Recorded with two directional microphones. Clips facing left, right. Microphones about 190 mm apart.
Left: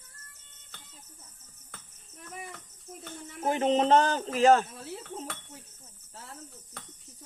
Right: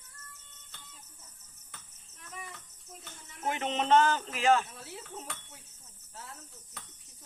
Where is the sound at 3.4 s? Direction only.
35° left (ahead or behind).